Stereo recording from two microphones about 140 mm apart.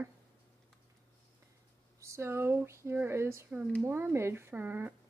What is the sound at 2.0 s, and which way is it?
Speech, 20° right (ahead or behind).